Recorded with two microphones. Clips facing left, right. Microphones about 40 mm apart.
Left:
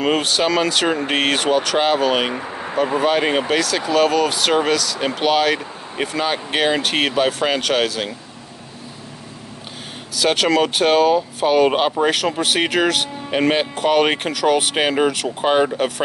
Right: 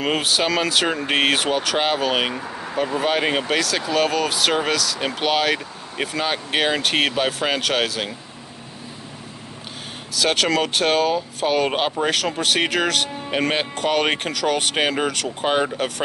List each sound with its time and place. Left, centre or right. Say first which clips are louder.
0.0 s speech: left 3 dB; centre
2.3 s speech: left 3 dB; left
3.0 s speech: left 2 dB; centre
10.1 s speech: left 3 dB; centre